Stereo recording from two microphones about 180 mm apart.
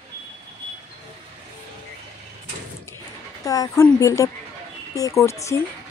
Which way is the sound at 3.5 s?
20° left (ahead or behind).